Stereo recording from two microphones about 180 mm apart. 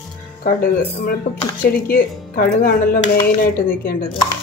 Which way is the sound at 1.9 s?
55° left (ahead or behind).